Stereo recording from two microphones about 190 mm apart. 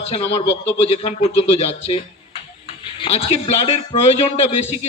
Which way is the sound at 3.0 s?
30° left (ahead or behind).